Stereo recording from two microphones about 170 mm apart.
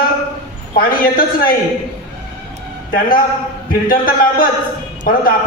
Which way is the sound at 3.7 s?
55° left (ahead or behind).